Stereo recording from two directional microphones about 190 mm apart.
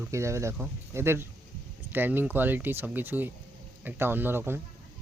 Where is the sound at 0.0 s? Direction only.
15° right (ahead or behind).